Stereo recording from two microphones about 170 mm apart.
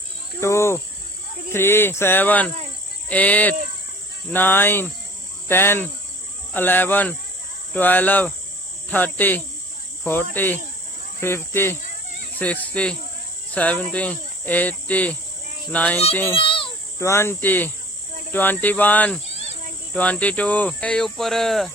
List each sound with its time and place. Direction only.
0.3 s cricket: 15° left (ahead or behind)
1.5 s speech: 15° left (ahead or behind)
16.3 s a sound: 30° left (ahead or behind)
17.0 s speech: 15° left (ahead or behind)
19.2 s cricket: 40° left (ahead or behind)
19.9 s speech: 10° left (ahead or behind)